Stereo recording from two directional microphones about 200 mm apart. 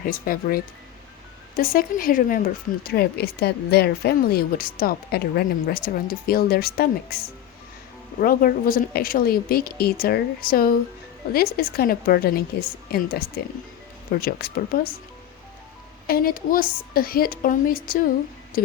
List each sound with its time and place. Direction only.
0.0 s a woman's voice: 45° left (ahead or behind)
8.2 s a woman's voice: 45° left (ahead or behind)
16.0 s a woman's voice: 45° left (ahead or behind)